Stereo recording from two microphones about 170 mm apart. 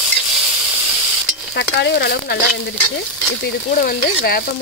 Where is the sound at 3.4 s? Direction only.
60° left (ahead or behind).